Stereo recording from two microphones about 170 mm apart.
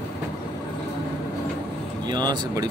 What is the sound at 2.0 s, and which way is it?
Vehicle, 25° right (ahead or behind).